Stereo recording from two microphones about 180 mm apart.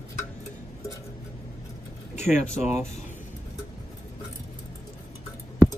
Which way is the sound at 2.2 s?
40° left (ahead or behind).